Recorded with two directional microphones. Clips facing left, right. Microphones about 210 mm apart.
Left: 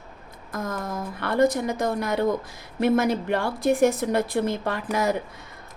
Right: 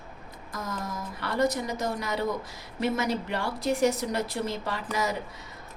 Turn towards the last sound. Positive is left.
turn(degrees=55)  # may be behind; listen again after turning